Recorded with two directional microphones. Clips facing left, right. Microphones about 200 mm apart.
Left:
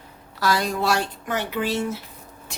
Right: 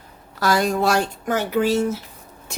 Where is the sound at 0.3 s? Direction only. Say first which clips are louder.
Right 4 dB; 50° right (ahead or behind).